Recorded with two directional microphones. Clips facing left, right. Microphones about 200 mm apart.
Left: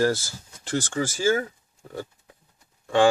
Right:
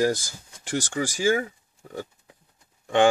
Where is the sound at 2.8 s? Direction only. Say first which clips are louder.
Even; 20° right (ahead or behind).